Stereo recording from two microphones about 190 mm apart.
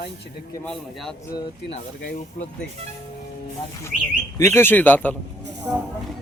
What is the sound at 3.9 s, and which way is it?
Speech, centre (ahead or behind).